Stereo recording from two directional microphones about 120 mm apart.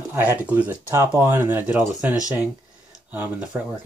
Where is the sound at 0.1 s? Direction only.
15° right (ahead or behind).